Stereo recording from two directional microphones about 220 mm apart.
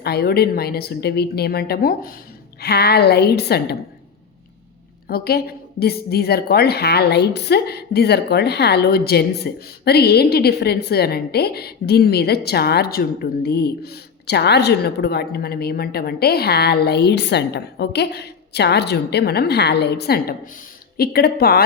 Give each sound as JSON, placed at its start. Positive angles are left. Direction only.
{"t": 0.0, "sound": "a woman's voice", "side_deg": 45}
{"t": 5.0, "sound": "a woman's voice", "side_deg": 45}